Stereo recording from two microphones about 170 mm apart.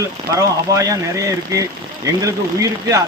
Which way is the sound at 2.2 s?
20° right (ahead or behind).